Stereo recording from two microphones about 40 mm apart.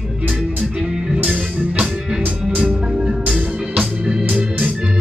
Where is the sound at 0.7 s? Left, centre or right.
Centre.